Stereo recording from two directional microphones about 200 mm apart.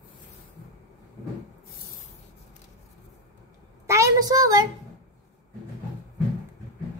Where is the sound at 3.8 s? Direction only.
15° right (ahead or behind).